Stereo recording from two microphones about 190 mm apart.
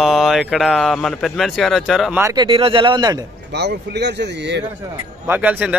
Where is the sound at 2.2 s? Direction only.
25° right (ahead or behind).